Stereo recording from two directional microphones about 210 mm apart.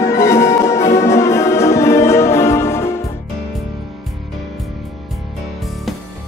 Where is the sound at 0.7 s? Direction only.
30° left (ahead or behind).